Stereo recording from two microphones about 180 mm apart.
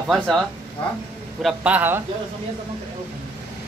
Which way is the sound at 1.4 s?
5° right (ahead or behind).